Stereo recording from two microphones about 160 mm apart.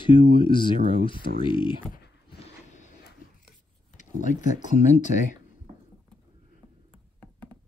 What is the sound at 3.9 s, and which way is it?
Speech, 50° left (ahead or behind).